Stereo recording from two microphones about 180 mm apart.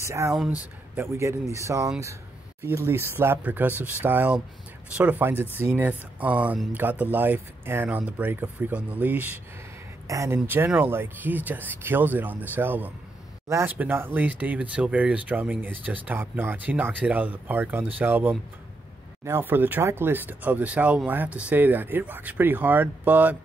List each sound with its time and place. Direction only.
0.0 s speech: 15° right (ahead or behind)